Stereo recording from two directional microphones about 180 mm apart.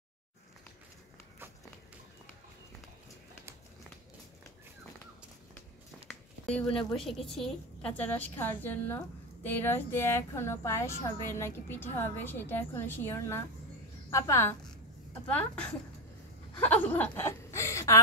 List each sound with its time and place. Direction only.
6.5 s a woman's voice: centre (ahead or behind)
16.5 s snicker: 10° left (ahead or behind)